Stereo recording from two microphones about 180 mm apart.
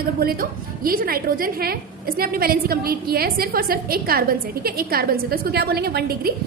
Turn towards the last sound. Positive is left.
turn(degrees=-60)  # may be behind; listen again after turning